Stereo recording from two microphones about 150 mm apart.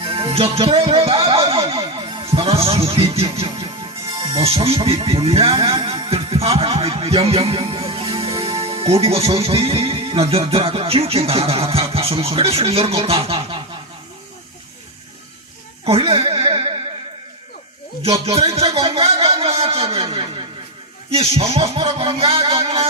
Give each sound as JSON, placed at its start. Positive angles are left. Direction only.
{"t": 0.0, "sound": "speech", "side_deg": -35}
{"t": 15.9, "sound": "a sound", "side_deg": -40}
{"t": 18.3, "sound": "speech", "side_deg": -40}